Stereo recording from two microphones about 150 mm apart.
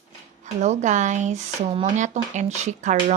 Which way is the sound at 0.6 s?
50° right (ahead or behind).